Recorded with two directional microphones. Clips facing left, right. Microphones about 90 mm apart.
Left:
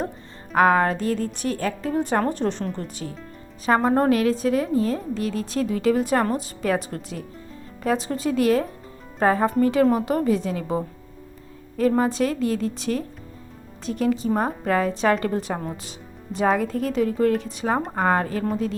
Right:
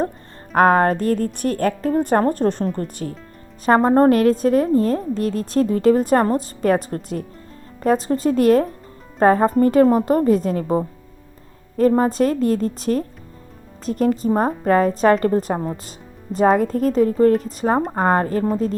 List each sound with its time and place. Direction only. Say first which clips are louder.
0.5 s a woman's voice: right 3 dB; 45° right (ahead or behind)